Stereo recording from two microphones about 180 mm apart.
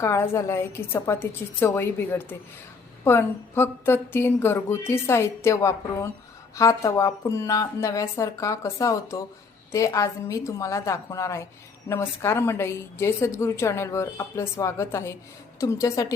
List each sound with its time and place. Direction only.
0.0 s a woman's voice: 15° left (ahead or behind)